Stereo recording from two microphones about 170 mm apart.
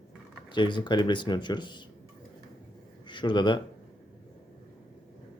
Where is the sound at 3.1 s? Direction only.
25° left (ahead or behind).